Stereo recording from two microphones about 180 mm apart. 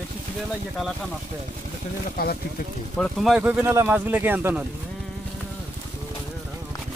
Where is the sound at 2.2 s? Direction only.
55° left (ahead or behind).